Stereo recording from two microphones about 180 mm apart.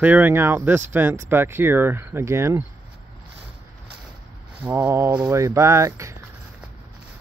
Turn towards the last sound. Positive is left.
turn(degrees=-15)  # may be behind; listen again after turning